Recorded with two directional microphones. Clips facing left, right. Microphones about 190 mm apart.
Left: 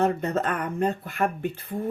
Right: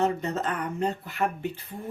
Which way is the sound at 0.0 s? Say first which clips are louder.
Left 3 dB; 55° left (ahead or behind).